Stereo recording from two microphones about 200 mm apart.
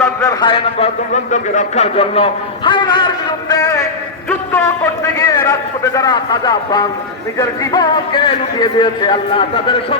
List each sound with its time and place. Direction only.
0.0 s a man's voice: 15° left (ahead or behind)